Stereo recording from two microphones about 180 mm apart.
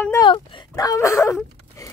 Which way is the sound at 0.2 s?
25° left (ahead or behind).